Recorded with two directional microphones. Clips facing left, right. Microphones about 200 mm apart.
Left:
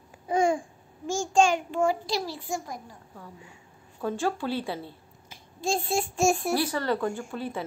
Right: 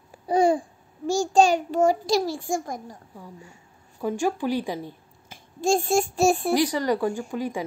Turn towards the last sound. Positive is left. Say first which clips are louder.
# right 4 dB
turn(degrees=-10)  # may be behind; listen again after turning